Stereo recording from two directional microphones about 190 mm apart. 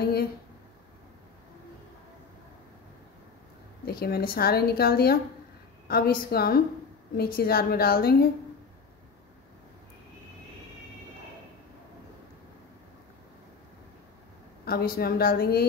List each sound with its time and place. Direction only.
0.0 s a sound: 55° left (ahead or behind)
3.8 s speech: 55° left (ahead or behind)
14.6 s speech: 55° left (ahead or behind)